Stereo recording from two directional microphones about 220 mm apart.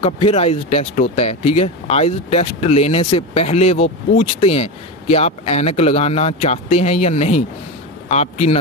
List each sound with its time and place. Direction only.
0.0 s speech: 25° left (ahead or behind)